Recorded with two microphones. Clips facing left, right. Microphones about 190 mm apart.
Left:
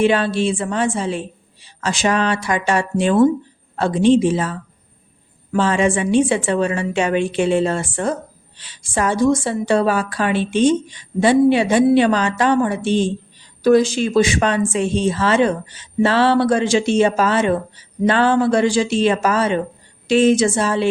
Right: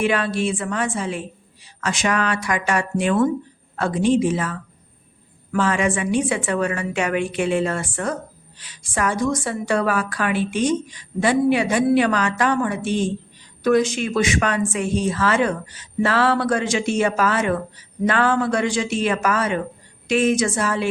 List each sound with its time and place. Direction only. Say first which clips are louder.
0.0 s speech: left 4 dB; 30° left (ahead or behind)